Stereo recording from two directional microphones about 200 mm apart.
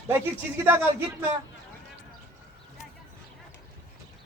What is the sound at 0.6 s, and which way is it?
Speech, 10° right (ahead or behind).